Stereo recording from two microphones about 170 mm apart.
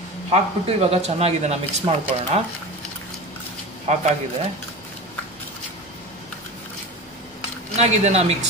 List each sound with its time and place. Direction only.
0.3 s speech: 35° right (ahead or behind)
3.8 s speech: 40° right (ahead or behind)
7.7 s speech: 40° right (ahead or behind)